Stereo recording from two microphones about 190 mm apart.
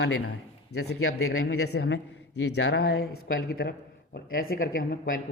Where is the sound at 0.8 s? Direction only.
75° left (ahead or behind); by 1.4 s 90° left.